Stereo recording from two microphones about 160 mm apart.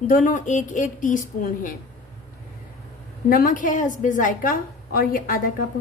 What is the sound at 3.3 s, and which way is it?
A woman's voice, 60° left (ahead or behind).